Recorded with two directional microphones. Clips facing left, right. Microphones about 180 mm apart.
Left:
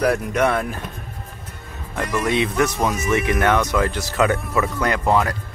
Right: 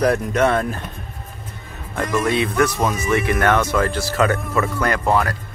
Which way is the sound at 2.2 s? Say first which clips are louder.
Even; 20° left (ahead or behind).